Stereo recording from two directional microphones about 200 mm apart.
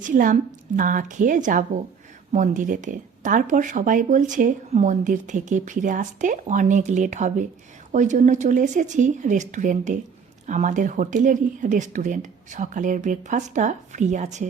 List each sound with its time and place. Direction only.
0.0 s speech: 40° right (ahead or behind)